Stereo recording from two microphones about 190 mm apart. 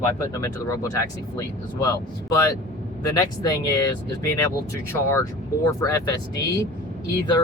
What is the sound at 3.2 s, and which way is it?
Speech, 20° left (ahead or behind).